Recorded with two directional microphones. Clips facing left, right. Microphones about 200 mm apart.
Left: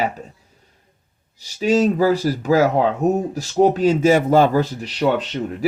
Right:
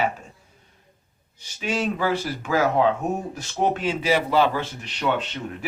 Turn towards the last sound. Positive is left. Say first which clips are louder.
# left 6 dB
turn(degrees=40)  # may be behind; listen again after turning